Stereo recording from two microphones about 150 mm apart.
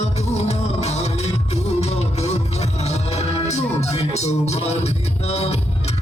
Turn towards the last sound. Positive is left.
turn(degrees=45)  # may be behind; listen again after turning